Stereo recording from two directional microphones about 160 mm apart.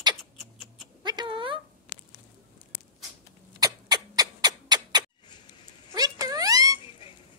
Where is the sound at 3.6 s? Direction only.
25° right (ahead or behind).